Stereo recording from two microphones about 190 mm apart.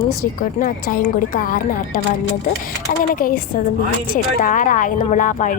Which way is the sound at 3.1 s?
50° left (ahead or behind).